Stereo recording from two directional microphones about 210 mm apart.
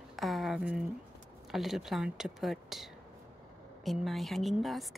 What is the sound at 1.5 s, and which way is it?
A woman's voice, centre (ahead or behind).